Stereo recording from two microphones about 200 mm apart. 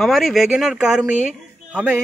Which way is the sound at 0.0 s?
Centre (ahead or behind).